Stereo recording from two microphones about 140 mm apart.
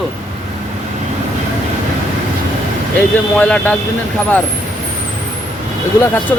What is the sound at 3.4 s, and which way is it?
Speech, 10° left (ahead or behind).